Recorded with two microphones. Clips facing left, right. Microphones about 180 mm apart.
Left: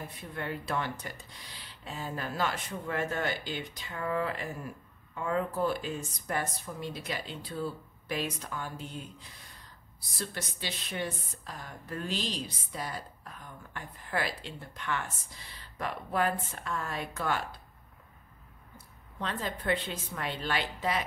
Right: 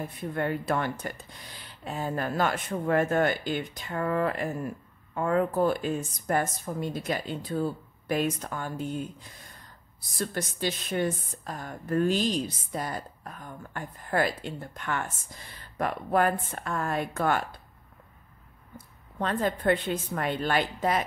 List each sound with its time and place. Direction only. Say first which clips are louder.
0.3 s a woman's voice: right 7 dB; 50° right (ahead or behind)
10.1 s a woman's voice: right 7 dB; 45° right (ahead or behind)
19.1 s a woman's voice: right 8 dB; 50° right (ahead or behind)